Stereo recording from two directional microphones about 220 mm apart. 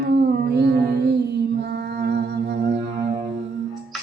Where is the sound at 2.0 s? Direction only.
50° right (ahead or behind).